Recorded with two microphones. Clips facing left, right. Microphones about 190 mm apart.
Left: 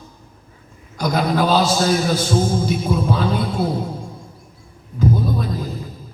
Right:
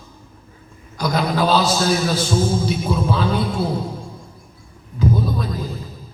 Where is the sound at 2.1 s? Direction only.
50° left (ahead or behind).